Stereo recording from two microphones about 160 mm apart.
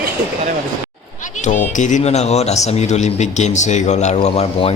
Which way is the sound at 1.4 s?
50° left (ahead or behind).